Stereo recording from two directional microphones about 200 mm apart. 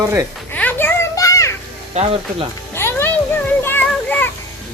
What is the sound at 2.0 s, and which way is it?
Speech, 35° right (ahead or behind).